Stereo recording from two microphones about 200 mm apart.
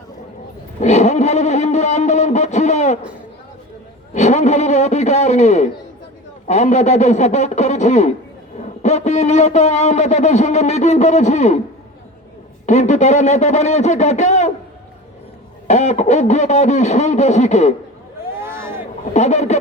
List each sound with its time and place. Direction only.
0.8 s a sound: 35° left (ahead or behind)
4.1 s speech: 35° left (ahead or behind)
12.6 s speech: 35° left (ahead or behind)
15.6 s speech: 35° left (ahead or behind)
18.3 s a sound: 10° right (ahead or behind)
19.1 s speech: 35° left (ahead or behind)